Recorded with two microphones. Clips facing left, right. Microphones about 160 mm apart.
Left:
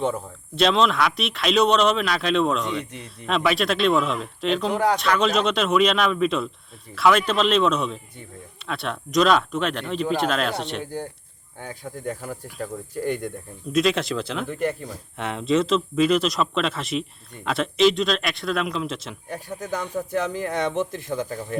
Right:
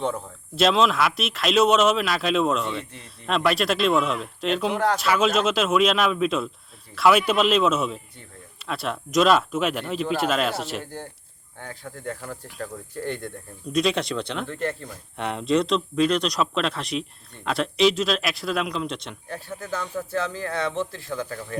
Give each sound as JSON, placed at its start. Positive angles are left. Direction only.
{"t": 0.0, "sound": "a man's voice", "side_deg": 0}
{"t": 4.7, "sound": "speech", "side_deg": 10}
{"t": 4.9, "sound": "a man's voice", "side_deg": -5}
{"t": 11.6, "sound": "speech", "side_deg": 15}
{"t": 13.7, "sound": "a man's voice", "side_deg": 0}
{"t": 14.5, "sound": "speech", "side_deg": 10}
{"t": 15.2, "sound": "a man's voice", "side_deg": 0}
{"t": 19.3, "sound": "speech", "side_deg": 15}